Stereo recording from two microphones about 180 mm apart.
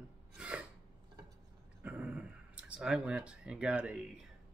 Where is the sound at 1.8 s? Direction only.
10° right (ahead or behind).